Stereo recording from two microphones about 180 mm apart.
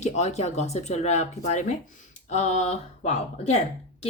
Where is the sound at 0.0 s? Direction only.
40° left (ahead or behind).